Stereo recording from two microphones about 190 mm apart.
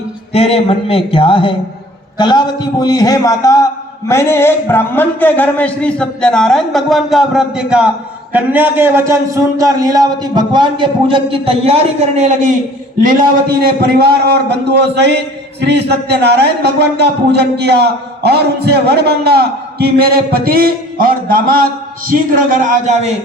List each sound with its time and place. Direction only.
0.3 s a man's voice: 30° left (ahead or behind); by 12.5 s 40° right (ahead or behind)
13.6 s a man's voice: 55° right (ahead or behind); by 23.1 s 40° right (ahead or behind)